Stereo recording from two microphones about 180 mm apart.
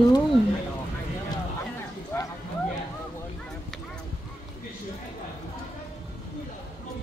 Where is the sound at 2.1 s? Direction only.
15° left (ahead or behind).